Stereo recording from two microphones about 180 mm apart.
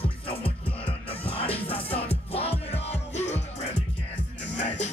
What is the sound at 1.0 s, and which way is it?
Music, 30° left (ahead or behind).